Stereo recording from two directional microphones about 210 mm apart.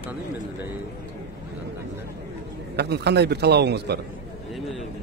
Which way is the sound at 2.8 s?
50° right (ahead or behind).